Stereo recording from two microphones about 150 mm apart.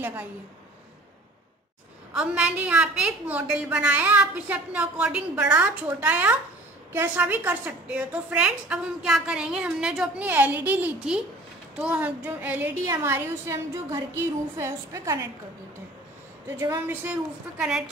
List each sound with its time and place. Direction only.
0.0 s a woman's voice: 10° right (ahead or behind)
2.1 s a woman's voice: 10° right (ahead or behind)
16.4 s a woman's voice: 15° right (ahead or behind)